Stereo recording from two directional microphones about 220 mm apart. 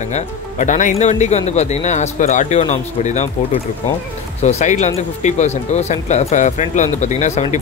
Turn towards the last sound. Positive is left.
turn(degrees=30)  # may be behind; listen again after turning